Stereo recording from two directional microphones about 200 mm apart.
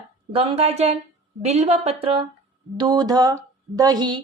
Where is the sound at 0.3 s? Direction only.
30° right (ahead or behind).